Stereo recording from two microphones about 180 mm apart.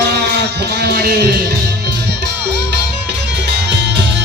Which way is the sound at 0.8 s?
65° right (ahead or behind).